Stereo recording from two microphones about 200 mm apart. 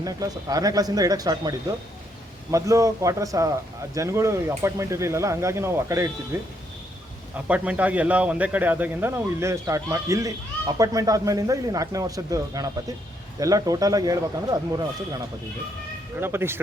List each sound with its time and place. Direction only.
0.0 s a man's voice: 20° right (ahead or behind)